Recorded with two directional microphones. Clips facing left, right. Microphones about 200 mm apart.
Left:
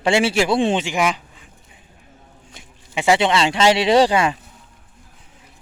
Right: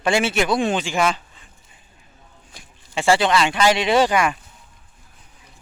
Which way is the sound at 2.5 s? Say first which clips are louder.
Left 1 dB; 20° left (ahead or behind).